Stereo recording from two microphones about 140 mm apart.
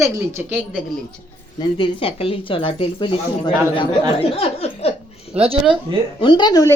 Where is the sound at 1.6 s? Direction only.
40° left (ahead or behind).